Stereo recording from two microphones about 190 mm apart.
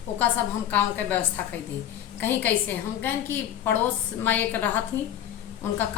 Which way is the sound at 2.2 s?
10° left (ahead or behind).